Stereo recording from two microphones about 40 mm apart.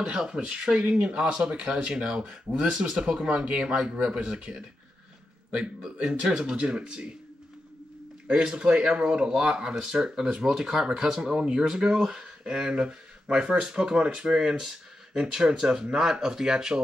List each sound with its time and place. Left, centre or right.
0.0 s speech: centre
6.4 s speech: right
8.3 s speech: right